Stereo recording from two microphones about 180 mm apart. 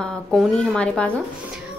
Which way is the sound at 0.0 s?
Centre (ahead or behind).